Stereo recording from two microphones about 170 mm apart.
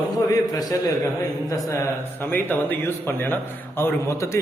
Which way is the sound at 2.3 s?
10° left (ahead or behind).